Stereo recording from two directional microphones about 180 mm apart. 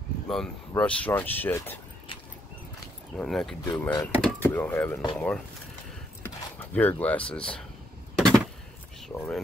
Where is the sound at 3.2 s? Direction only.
Centre (ahead or behind).